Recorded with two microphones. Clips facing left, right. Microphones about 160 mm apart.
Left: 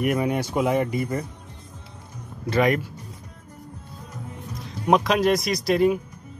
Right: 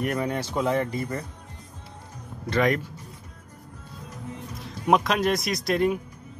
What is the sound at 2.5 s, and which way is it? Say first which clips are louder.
Speech: left 2 dB; 10° left (ahead or behind).